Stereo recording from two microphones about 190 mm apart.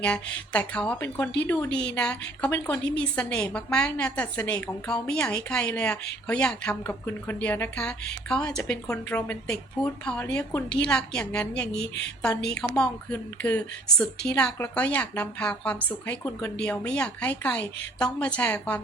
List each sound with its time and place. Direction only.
0.0 s a woman's voice: 5° left (ahead or behind)
1.7 s a woman's voice: 60° left (ahead or behind)
2.0 s a woman's voice: 5° left (ahead or behind)
11.8 s a woman's voice: 65° left (ahead or behind)
12.2 s a woman's voice: 5° left (ahead or behind)